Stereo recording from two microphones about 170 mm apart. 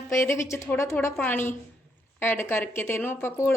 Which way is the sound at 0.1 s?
15° left (ahead or behind).